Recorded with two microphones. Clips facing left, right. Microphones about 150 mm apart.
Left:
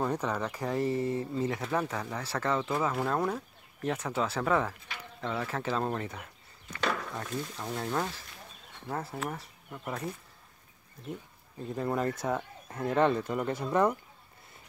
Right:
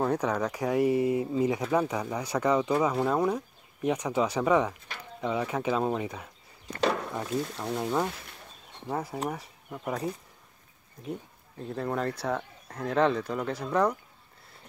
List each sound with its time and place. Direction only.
0.0 s a sound: 10° right (ahead or behind)
0.4 s speech: 10° right (ahead or behind)
6.9 s speech: 20° right (ahead or behind)
11.5 s speech: centre (ahead or behind)